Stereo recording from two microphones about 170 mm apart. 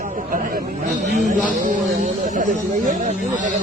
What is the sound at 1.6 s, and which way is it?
Speech, 50° right (ahead or behind).